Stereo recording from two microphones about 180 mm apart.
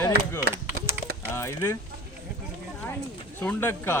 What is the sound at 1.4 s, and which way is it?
Speech, 15° left (ahead or behind).